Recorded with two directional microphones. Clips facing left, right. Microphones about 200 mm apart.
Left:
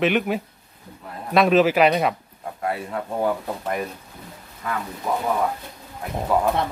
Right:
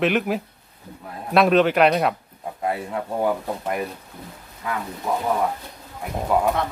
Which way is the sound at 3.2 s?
10° right (ahead or behind).